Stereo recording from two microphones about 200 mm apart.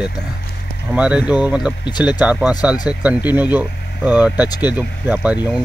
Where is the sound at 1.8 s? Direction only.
20° left (ahead or behind).